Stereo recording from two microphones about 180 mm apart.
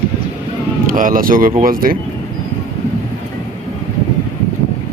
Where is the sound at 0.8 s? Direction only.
50° right (ahead or behind).